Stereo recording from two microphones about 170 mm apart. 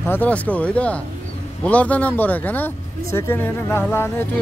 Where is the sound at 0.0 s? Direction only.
10° left (ahead or behind).